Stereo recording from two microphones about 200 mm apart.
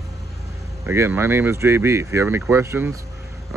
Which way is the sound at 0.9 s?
15° right (ahead or behind).